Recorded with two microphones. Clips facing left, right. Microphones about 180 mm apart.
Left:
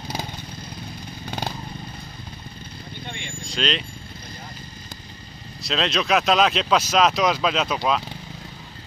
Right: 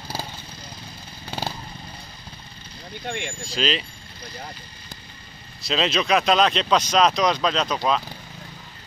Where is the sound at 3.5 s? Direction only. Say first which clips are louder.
Even; 5° right (ahead or behind).